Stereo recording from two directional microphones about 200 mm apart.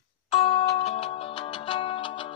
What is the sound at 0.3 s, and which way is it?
Music, 25° left (ahead or behind).